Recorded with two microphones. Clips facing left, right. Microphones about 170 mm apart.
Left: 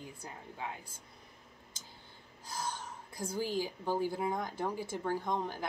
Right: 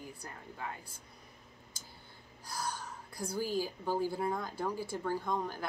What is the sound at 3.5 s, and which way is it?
Speech, 15° left (ahead or behind).